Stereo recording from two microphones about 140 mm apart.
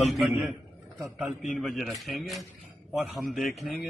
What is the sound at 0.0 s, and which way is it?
A man's voice, centre (ahead or behind).